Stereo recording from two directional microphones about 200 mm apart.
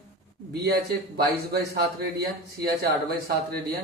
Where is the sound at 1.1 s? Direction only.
50° right (ahead or behind).